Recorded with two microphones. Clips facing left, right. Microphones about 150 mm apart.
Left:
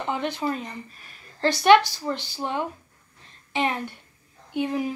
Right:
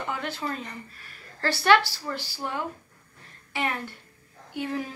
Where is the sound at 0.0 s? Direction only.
20° left (ahead or behind).